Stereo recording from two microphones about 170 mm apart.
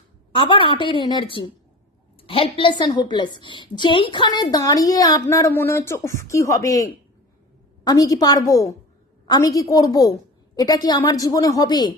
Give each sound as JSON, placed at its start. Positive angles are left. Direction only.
{"t": 0.3, "sound": "a woman's voice", "side_deg": 30}